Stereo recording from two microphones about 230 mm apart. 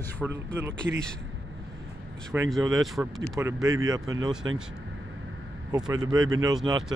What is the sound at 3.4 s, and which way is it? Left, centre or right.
Speech, centre.